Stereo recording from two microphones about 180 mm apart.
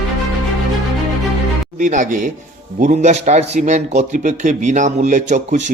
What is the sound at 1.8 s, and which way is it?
A man's voice, 45° right (ahead or behind).